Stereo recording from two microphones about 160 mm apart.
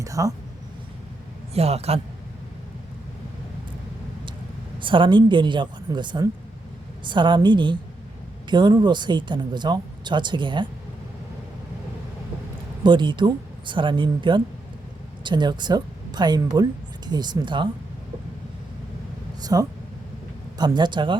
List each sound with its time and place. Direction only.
0.0 s speech: 20° right (ahead or behind)
1.5 s a man's voice: 40° right (ahead or behind)
4.8 s speech: 30° right (ahead or behind)
12.8 s speech: 30° right (ahead or behind)
19.4 s a sound: 25° right (ahead or behind)
20.6 s speech: 25° right (ahead or behind)